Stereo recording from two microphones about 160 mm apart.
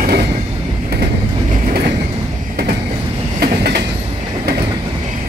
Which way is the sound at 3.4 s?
75° right (ahead or behind).